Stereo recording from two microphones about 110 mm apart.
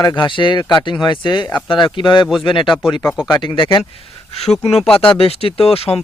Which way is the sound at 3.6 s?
50° left (ahead or behind).